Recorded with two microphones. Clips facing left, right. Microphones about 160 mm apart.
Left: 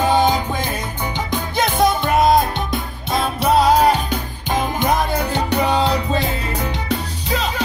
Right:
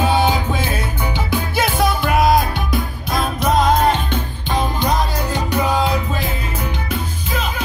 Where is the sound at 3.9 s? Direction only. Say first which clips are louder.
Even; 40° left (ahead or behind); by 5.6 s 60° left (ahead or behind).